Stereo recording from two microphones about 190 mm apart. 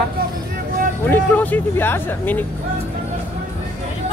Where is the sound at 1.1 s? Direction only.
10° left (ahead or behind).